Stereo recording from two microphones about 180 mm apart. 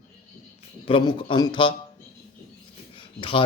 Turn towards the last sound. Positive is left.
turn(degrees=30)  # may be behind; listen again after turning